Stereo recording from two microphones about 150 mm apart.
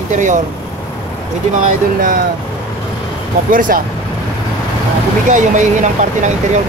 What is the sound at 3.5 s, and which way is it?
Speech, 65° right (ahead or behind).